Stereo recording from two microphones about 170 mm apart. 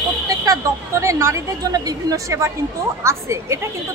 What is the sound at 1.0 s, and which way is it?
A woman's voice, 15° right (ahead or behind).